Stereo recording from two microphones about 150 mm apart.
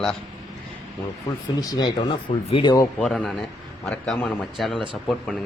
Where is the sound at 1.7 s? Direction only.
30° left (ahead or behind).